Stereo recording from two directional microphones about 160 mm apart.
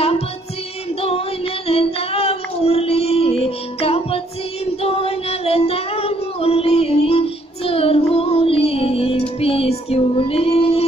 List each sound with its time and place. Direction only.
1.0 s child singing: 40° left (ahead or behind)